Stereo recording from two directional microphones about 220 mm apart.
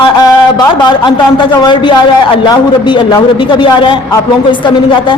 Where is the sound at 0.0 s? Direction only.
20° left (ahead or behind).